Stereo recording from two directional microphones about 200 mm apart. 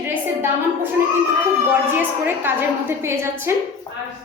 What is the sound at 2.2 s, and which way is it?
A woman's voice, 10° right (ahead or behind).